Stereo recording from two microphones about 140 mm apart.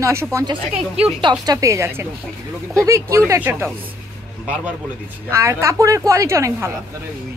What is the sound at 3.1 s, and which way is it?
Speech, 20° right (ahead or behind).